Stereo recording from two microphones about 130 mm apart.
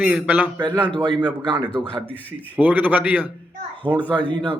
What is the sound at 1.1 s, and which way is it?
Speech, 35° right (ahead or behind).